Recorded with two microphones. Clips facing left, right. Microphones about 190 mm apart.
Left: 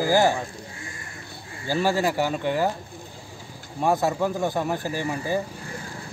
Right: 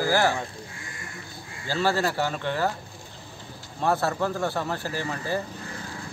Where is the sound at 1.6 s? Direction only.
15° left (ahead or behind).